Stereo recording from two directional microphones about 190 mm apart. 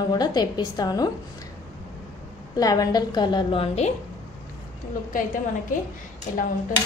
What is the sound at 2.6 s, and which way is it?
A woman's voice, 20° left (ahead or behind).